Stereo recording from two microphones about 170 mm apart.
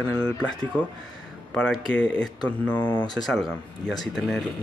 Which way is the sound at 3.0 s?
25° left (ahead or behind).